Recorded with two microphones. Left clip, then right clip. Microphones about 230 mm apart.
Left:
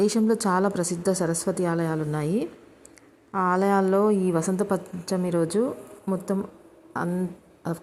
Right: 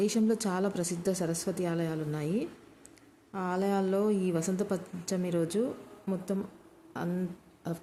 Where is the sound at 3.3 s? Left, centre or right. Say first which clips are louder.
Left 9 dB; centre.